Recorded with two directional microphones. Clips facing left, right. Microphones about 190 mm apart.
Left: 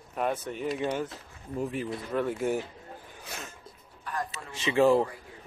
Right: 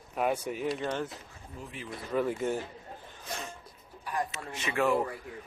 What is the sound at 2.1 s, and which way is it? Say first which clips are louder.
Speech: left 1 dB; centre (ahead or behind).